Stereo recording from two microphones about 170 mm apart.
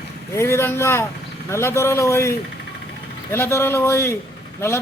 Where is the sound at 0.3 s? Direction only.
15° left (ahead or behind).